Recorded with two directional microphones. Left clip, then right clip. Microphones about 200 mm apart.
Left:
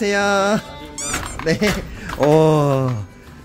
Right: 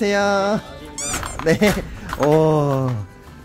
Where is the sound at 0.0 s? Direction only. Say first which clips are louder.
Left 1 dB; 10° right (ahead or behind).